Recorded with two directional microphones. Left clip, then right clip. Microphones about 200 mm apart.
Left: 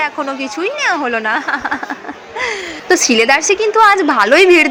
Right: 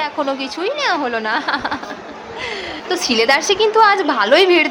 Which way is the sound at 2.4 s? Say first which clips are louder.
Left 5 dB; 20° left (ahead or behind).